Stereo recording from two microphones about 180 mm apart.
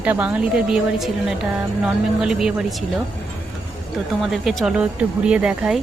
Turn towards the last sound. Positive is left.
turn(degrees=-5)  # may be behind; listen again after turning